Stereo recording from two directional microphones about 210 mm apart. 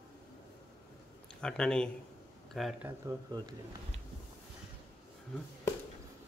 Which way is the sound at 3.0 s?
20° right (ahead or behind).